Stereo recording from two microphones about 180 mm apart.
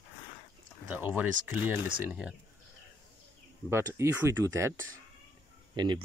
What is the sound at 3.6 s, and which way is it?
Speech, 15° right (ahead or behind).